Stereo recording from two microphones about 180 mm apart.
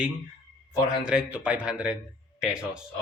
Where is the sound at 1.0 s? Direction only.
5° right (ahead or behind).